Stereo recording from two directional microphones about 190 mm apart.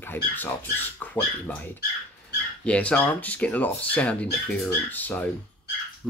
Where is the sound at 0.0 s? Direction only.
10° left (ahead or behind).